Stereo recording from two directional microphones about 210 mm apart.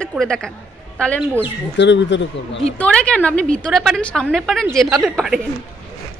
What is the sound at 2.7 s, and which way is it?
A woman's voice, 5° left (ahead or behind).